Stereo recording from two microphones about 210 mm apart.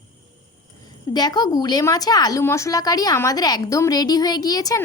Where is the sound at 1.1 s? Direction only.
20° left (ahead or behind).